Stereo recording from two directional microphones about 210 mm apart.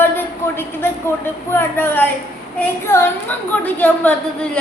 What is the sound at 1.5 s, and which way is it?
A woman's voice, 10° left (ahead or behind).